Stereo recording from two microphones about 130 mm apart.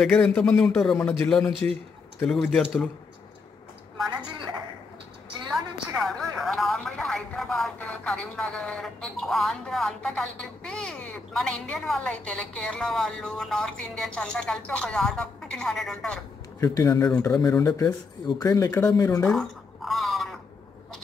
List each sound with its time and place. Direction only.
0.0 s a man's voice: 10° left (ahead or behind)
2.5 s a man's voice: 5° left (ahead or behind)
5.5 s a woman's voice: centre (ahead or behind)
16.5 s a man's voice: 25° left (ahead or behind)
19.2 s a sound: 5° left (ahead or behind)